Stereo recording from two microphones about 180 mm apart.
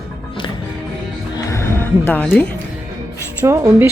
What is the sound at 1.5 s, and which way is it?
Music, 15° left (ahead or behind).